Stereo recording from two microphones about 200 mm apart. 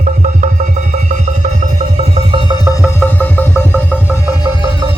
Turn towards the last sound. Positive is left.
turn(degrees=10)  # may be behind; listen again after turning